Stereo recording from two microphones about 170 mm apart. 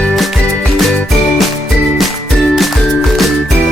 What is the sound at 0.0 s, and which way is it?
Music, centre (ahead or behind).